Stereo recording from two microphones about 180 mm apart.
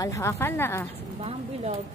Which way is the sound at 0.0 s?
15° left (ahead or behind).